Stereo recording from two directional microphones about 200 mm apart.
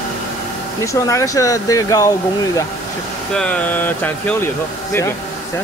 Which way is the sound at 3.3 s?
5° left (ahead or behind).